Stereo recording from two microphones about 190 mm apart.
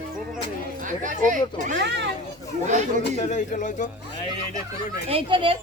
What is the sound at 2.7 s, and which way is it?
Speech, 40° right (ahead or behind).